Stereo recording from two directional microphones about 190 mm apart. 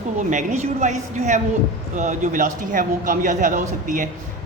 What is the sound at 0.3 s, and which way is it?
A man's voice, 40° right (ahead or behind).